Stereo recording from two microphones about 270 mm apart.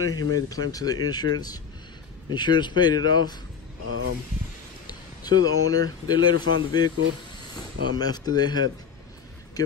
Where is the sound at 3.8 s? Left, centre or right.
Right.